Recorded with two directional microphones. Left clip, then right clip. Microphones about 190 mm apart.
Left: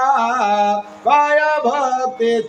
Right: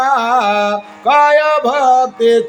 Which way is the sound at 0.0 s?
45° right (ahead or behind).